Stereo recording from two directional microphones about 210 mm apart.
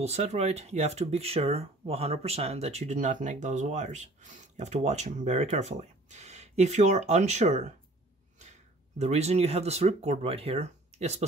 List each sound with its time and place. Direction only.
0.0 s speech: 30° right (ahead or behind)